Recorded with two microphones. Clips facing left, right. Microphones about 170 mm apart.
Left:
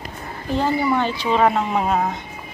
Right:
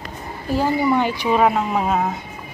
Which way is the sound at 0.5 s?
15° right (ahead or behind).